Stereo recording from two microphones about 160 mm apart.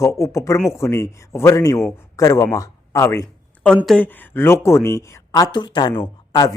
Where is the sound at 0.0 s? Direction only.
20° left (ahead or behind).